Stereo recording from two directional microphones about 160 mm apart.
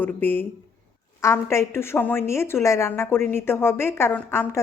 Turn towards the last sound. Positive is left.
turn(degrees=15)  # may be behind; listen again after turning